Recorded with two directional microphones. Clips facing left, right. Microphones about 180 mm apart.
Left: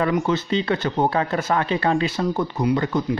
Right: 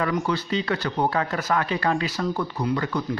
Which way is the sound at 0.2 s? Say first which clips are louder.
Left 4 dB; 25° left (ahead or behind).